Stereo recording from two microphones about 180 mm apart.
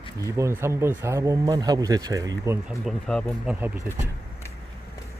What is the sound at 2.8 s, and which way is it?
Speech, centre (ahead or behind).